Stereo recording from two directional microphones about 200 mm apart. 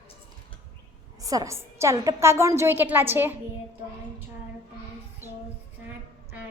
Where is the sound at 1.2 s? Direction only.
15° right (ahead or behind).